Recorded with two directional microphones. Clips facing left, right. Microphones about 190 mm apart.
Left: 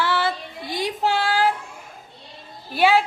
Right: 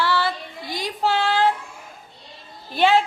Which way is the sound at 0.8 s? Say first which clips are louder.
Right 1 dB; 15° left (ahead or behind).